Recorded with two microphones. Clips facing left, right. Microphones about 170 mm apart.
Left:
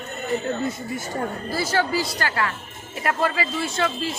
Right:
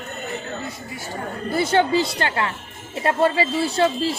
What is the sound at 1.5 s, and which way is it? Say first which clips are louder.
Speech: right 5 dB; 25° right (ahead or behind).